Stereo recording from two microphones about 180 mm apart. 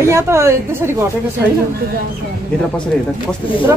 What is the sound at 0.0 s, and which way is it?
Speech, 15° right (ahead or behind).